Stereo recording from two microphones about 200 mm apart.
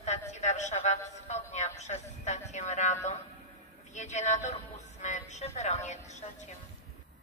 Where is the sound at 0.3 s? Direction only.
35° left (ahead or behind).